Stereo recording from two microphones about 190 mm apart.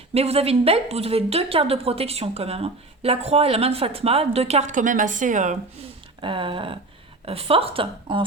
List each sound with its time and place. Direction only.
0.1 s a woman's voice: 35° right (ahead or behind)
6.2 s a woman's voice: 25° right (ahead or behind)